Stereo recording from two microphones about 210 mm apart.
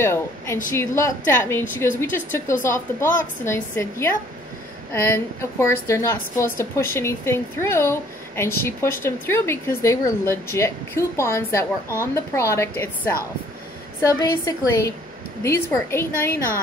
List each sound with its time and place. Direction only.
0.0 s a woman's voice: 10° left (ahead or behind)